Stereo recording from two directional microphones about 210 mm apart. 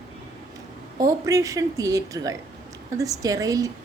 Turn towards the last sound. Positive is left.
turn(degrees=-15)  # may be behind; listen again after turning